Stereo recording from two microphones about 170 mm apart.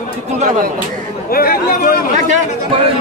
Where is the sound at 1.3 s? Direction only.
60° left (ahead or behind).